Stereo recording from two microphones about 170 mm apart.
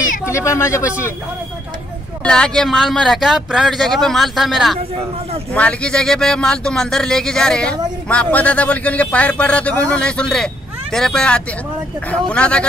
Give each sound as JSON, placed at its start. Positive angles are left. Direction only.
{"t": 0.2, "sound": "a man's voice", "side_deg": 15}
{"t": 2.2, "sound": "a man's voice", "side_deg": 5}